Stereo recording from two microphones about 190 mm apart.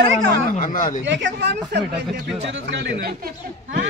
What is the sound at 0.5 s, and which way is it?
Speech, 45° left (ahead or behind).